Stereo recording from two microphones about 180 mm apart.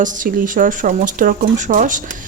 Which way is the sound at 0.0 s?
45° right (ahead or behind).